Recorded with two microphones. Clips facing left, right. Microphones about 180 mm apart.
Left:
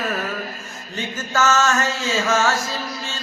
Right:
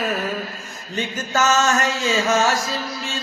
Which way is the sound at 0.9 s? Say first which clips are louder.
Right 1 dB; 15° right (ahead or behind).